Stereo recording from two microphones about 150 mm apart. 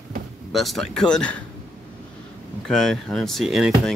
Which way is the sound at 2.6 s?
5° left (ahead or behind).